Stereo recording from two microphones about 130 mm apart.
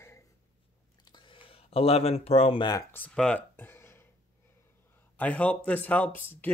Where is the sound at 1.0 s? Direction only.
40° left (ahead or behind).